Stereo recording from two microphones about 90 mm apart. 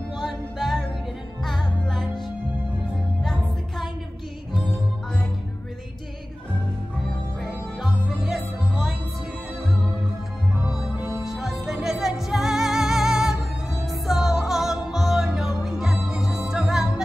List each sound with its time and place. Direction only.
0.2 s music: centre (ahead or behind)
3.2 s music: centre (ahead or behind)
10.7 s music: 10° right (ahead or behind)